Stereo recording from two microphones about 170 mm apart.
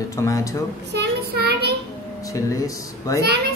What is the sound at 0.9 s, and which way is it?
Child singing, 75° right (ahead or behind).